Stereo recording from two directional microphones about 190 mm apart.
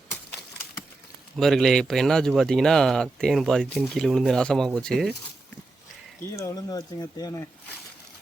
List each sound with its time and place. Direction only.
1.4 s speech: centre (ahead or behind)
6.3 s speech: 15° left (ahead or behind)